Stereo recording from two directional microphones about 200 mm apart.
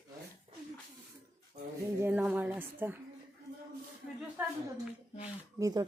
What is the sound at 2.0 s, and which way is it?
A woman's voice, 10° right (ahead or behind).